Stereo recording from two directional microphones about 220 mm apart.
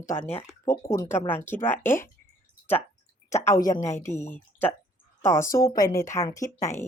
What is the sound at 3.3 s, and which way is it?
A woman's voice, 15° left (ahead or behind).